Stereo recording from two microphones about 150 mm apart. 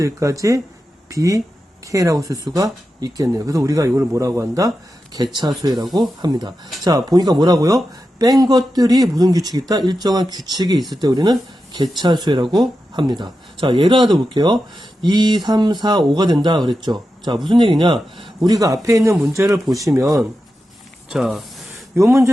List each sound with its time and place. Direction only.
0.0 s speech: 20° right (ahead or behind)
21.1 s speech: centre (ahead or behind)
21.9 s speech: 20° right (ahead or behind)